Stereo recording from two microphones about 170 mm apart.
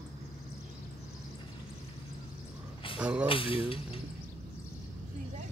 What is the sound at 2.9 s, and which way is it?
Speech, 5° right (ahead or behind).